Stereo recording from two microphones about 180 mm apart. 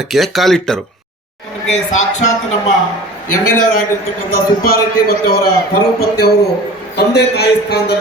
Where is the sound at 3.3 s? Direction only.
50° left (ahead or behind).